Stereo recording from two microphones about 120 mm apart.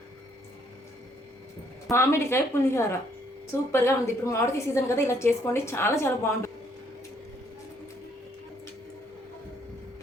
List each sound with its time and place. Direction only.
1.9 s a woman's voice: 20° left (ahead or behind)